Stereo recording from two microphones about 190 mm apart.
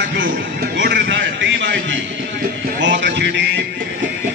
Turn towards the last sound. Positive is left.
turn(degrees=-65)  # may be behind; listen again after turning